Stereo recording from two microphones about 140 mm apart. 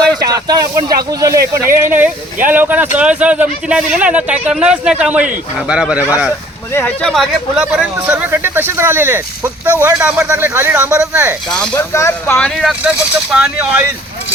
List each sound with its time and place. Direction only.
0.2 s speech: 25° right (ahead or behind); by 6.3 s 10° right (ahead or behind)
6.7 s speech: 10° left (ahead or behind)
7.1 s speech: centre (ahead or behind)
11.5 s speech: 5° left (ahead or behind)
11.8 s speech: 20° left (ahead or behind)
12.5 s speech: 5° right (ahead or behind)